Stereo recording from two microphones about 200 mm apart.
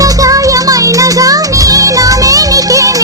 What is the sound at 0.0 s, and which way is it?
Music, 15° right (ahead or behind).